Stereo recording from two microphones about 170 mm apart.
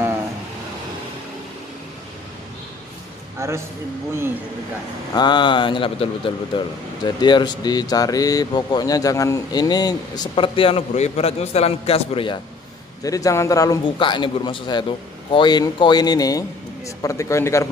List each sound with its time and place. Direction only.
3.3 s speech: 15° right (ahead or behind)
5.1 s speech: 25° left (ahead or behind)
13.0 s speech: 20° left (ahead or behind)